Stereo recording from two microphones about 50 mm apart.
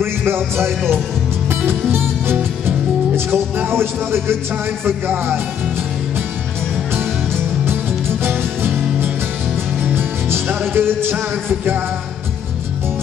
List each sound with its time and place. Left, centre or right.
0.0 s music: right
3.6 s speech: right
7.0 s music: right
10.7 s speech: right